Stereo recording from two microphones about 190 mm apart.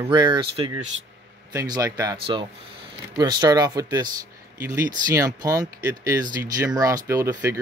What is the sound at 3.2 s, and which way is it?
Speech, 20° right (ahead or behind).